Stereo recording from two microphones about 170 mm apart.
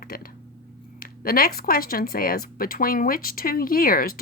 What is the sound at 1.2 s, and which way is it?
Speech, 60° left (ahead or behind).